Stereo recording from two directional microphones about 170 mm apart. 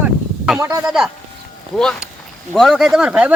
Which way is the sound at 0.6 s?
20° right (ahead or behind).